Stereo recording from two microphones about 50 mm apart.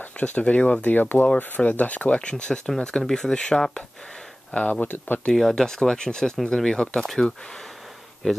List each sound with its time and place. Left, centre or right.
0.2 s speech: left
4.6 s speech: left
5.3 s speech: centre